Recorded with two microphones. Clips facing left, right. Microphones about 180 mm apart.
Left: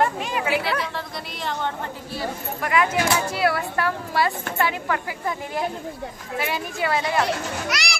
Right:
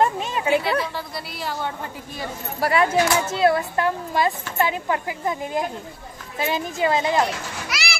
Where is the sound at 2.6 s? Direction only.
35° right (ahead or behind).